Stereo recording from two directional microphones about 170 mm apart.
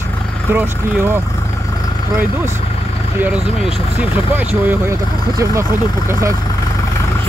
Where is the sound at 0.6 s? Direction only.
15° right (ahead or behind).